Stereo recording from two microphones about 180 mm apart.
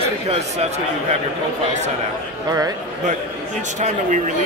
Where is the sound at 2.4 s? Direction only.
20° right (ahead or behind).